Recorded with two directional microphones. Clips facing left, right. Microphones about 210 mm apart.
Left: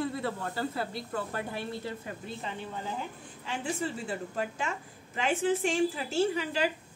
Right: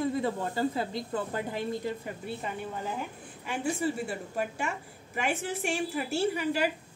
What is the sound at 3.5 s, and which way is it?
A woman's voice, 10° right (ahead or behind).